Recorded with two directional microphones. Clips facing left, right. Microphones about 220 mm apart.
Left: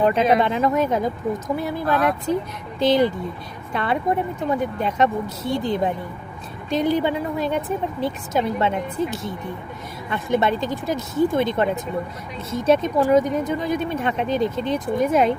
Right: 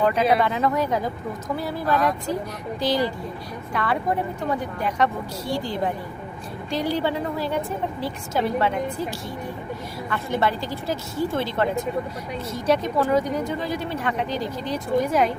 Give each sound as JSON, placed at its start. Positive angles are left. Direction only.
{"t": 0.0, "sound": "speech", "side_deg": 25}